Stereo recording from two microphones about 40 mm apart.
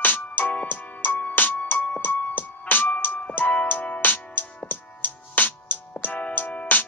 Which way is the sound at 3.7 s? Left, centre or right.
Left.